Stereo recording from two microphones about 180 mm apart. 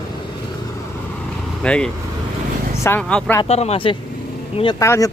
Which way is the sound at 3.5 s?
35° left (ahead or behind).